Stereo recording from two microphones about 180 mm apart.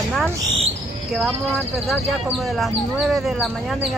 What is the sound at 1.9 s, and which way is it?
Speech, centre (ahead or behind).